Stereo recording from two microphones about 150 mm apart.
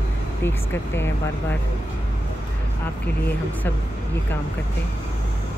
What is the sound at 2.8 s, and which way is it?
Speech, 10° left (ahead or behind).